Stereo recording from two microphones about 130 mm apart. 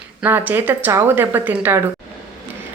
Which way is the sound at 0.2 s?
15° right (ahead or behind).